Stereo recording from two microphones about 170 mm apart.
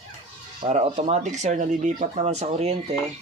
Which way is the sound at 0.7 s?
40° right (ahead or behind).